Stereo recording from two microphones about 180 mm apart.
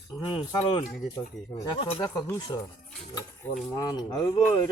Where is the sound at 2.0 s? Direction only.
20° left (ahead or behind).